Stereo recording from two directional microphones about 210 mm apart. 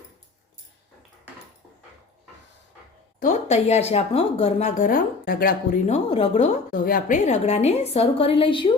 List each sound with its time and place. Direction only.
3.2 s speech: 35° left (ahead or behind)